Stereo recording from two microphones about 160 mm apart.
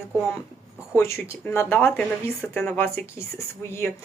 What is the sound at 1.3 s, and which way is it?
A woman's voice, 15° left (ahead or behind).